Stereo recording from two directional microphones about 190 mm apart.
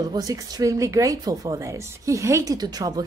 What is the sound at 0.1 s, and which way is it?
Speech, 20° right (ahead or behind).